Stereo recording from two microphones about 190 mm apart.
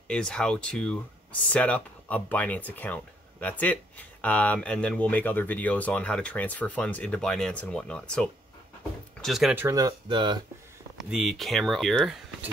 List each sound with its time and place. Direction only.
0.1 s speech: 5° left (ahead or behind)
9.7 s speech: 20° right (ahead or behind)
11.0 s speech: centre (ahead or behind)